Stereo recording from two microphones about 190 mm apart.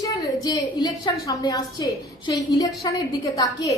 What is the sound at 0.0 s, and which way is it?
A woman's voice, 20° left (ahead or behind).